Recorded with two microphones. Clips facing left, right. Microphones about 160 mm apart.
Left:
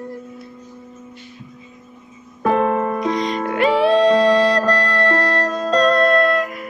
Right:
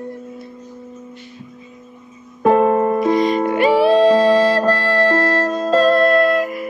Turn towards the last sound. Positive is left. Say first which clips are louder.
# right 2 dB
turn(degrees=0)  # may be behind; listen again after turning